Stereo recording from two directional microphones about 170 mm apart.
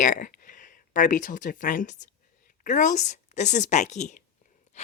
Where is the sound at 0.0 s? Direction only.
50° left (ahead or behind).